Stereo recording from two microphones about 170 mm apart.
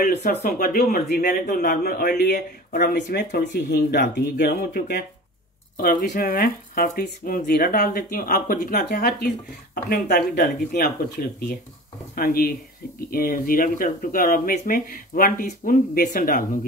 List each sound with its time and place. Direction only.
0.0 s speech: 55° left (ahead or behind); by 4.5 s 75° left (ahead or behind)
4.5 s speech: 60° left (ahead or behind)
5.8 s speech: 55° left (ahead or behind)
9.8 s speech: 70° left (ahead or behind)